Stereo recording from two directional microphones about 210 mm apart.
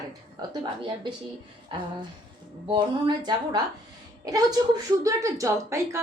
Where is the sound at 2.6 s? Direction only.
20° right (ahead or behind).